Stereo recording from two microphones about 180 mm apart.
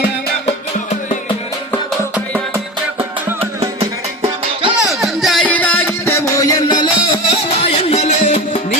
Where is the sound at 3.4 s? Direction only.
30° right (ahead or behind).